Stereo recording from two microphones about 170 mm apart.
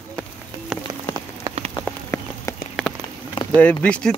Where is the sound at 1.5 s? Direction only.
20° right (ahead or behind).